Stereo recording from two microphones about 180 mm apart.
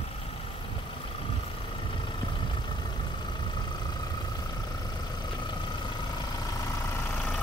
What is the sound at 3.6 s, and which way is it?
Vehicle, 25° left (ahead or behind).